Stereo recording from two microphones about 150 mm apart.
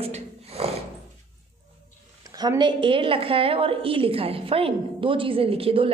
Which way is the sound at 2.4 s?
30° right (ahead or behind).